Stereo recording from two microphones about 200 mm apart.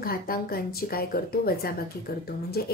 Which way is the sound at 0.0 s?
50° left (ahead or behind).